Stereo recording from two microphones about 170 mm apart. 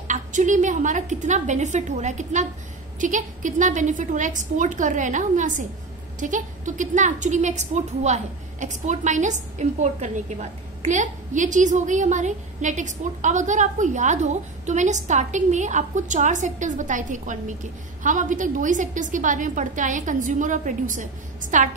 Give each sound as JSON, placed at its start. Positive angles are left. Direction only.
{"t": 0.1, "sound": "a woman's voice", "side_deg": -45}